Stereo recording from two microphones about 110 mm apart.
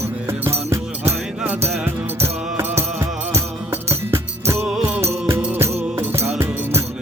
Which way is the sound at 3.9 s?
25° right (ahead or behind).